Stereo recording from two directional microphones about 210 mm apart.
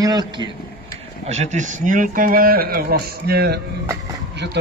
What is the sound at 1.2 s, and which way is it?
A man's voice, 30° right (ahead or behind).